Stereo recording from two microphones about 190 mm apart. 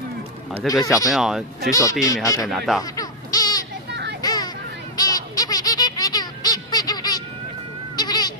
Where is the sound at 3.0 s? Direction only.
20° left (ahead or behind).